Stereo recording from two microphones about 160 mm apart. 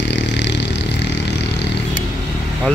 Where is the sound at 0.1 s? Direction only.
90° left.